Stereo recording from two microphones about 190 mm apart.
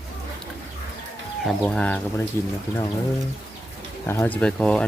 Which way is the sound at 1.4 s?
5° left (ahead or behind).